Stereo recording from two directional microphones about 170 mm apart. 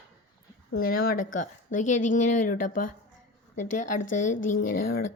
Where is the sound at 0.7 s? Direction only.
60° left (ahead or behind).